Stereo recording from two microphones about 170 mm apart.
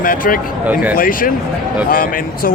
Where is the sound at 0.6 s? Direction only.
10° right (ahead or behind).